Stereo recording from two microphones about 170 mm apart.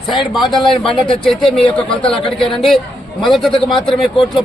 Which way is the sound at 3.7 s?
30° left (ahead or behind).